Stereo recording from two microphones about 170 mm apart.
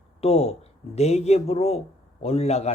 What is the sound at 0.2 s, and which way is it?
A man's voice, 35° left (ahead or behind).